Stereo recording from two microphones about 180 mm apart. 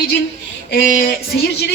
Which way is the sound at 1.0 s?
55° left (ahead or behind).